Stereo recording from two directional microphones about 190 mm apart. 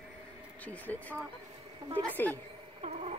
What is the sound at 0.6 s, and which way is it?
Speech, 10° left (ahead or behind).